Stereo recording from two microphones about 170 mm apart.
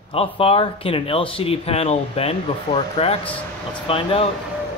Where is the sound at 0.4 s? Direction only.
30° left (ahead or behind).